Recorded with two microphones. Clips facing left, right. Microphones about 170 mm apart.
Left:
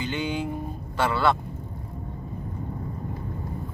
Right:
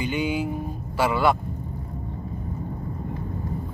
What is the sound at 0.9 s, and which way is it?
Speech, 10° right (ahead or behind).